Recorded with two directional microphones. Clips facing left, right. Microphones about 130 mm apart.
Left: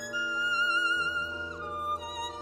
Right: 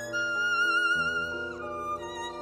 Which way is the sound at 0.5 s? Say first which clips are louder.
Right 2 dB; 25° left (ahead or behind).